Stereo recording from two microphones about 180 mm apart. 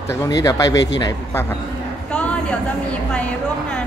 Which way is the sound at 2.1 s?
5° left (ahead or behind).